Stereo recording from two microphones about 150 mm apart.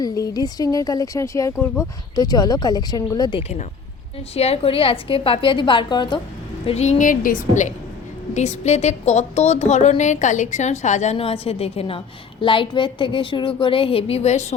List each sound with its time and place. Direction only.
0.0 s speech: 25° left (ahead or behind)
4.4 s a woman's voice: 45° left (ahead or behind)
6.7 s a woman's voice: 45° left (ahead or behind); by 7.7 s 60° left (ahead or behind)
8.3 s a woman's voice: 50° left (ahead or behind)